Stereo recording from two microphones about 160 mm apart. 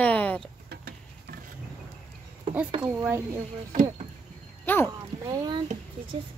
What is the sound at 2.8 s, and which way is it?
Speech, 10° right (ahead or behind).